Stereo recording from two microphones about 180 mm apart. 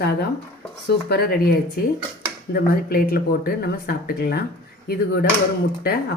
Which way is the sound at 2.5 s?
55° left (ahead or behind).